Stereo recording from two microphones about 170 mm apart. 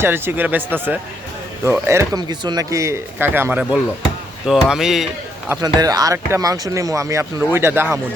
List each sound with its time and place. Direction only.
0.0 s speech: 15° right (ahead or behind)
5.5 s speech: 20° right (ahead or behind)